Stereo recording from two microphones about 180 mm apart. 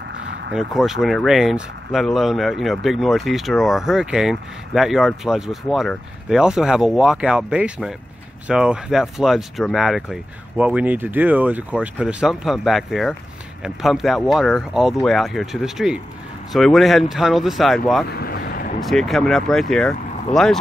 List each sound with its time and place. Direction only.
0.6 s speech: centre (ahead or behind)
18.1 s boat: 60° left (ahead or behind)
18.8 s speech: centre (ahead or behind)